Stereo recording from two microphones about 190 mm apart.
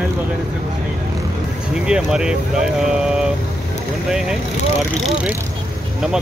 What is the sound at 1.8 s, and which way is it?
Speech, 5° right (ahead or behind).